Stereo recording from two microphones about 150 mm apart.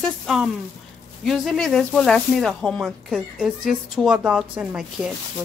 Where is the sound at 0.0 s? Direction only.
Centre (ahead or behind).